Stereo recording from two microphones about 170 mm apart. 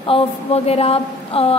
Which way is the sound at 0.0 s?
35° left (ahead or behind).